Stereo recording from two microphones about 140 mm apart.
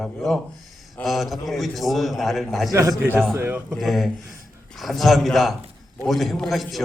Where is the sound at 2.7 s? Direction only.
20° right (ahead or behind).